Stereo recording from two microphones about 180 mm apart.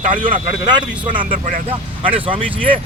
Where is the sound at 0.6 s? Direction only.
25° right (ahead or behind).